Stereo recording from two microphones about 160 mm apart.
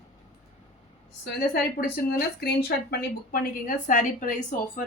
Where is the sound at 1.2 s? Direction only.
90° left; by 4.3 s 55° left (ahead or behind).